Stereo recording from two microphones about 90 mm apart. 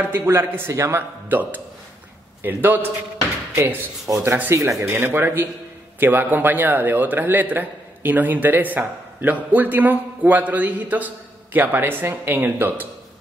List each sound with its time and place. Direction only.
0.0 s a man's voice: 25° right (ahead or behind)
1.3 s a man's voice: 20° right (ahead or behind)
4.2 s a man's voice: 25° right (ahead or behind)